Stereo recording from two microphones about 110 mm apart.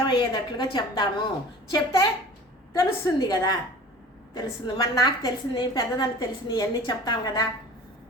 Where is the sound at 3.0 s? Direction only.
35° left (ahead or behind).